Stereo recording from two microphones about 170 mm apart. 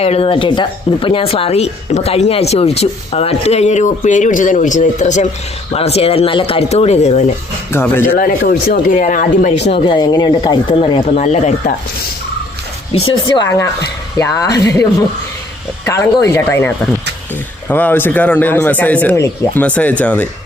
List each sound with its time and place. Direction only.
0.0 s speech: 35° left (ahead or behind)
7.7 s speech: 15° left (ahead or behind)
8.1 s speech: 60° left (ahead or behind); by 11.7 s 40° left (ahead or behind)
12.9 s speech: 30° left (ahead or behind); by 20.2 s 10° left (ahead or behind)